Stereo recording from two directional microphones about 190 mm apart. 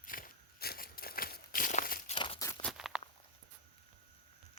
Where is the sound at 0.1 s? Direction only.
50° left (ahead or behind).